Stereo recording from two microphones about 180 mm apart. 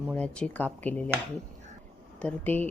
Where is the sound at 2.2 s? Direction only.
10° left (ahead or behind).